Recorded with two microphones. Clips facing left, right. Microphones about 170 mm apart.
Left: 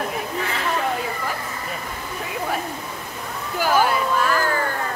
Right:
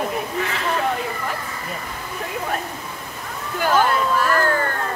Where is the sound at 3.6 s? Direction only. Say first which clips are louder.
Right 1 dB; 5° left (ahead or behind).